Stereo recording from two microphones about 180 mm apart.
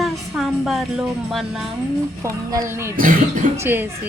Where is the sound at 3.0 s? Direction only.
50° right (ahead or behind).